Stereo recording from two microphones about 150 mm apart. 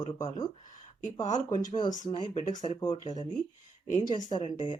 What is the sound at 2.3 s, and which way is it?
Speech, 50° left (ahead or behind).